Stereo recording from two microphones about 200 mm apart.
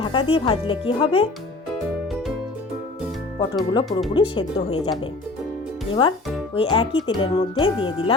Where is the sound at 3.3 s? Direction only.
20° left (ahead or behind).